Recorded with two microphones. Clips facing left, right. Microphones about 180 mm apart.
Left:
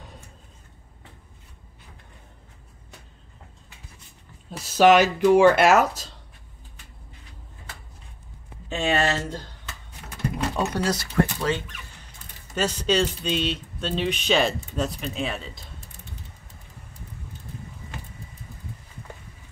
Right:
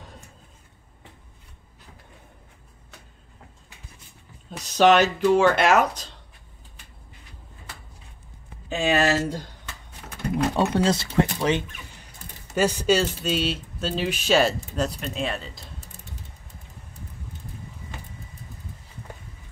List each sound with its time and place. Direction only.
4.6 s speech: 5° left (ahead or behind)
8.6 s speech: 5° right (ahead or behind)
10.5 s speech: 30° right (ahead or behind); by 15.6 s centre (ahead or behind)